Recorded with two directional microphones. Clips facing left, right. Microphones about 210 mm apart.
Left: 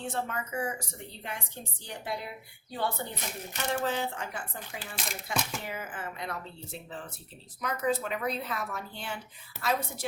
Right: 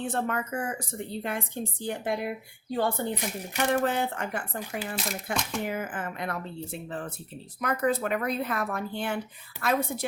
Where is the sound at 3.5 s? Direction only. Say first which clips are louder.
Right 5 dB; 60° right (ahead or behind).